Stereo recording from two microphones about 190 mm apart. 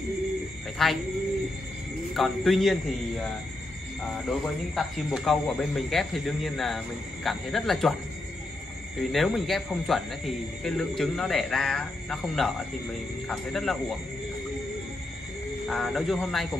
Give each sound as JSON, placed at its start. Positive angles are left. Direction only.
{"t": 0.8, "sound": "a man's voice", "side_deg": 0}
{"t": 2.1, "sound": "a man's voice", "side_deg": 0}
{"t": 9.1, "sound": "a man's voice", "side_deg": 0}
{"t": 15.7, "sound": "a man's voice", "side_deg": 0}